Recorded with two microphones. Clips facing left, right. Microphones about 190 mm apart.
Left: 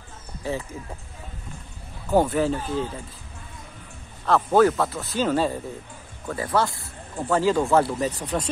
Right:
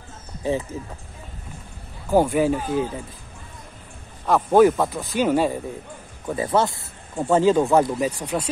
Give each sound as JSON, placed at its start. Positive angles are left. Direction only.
{"t": 0.4, "sound": "speech", "side_deg": -20}
{"t": 2.0, "sound": "speech", "side_deg": -10}
{"t": 4.3, "sound": "speech", "side_deg": -15}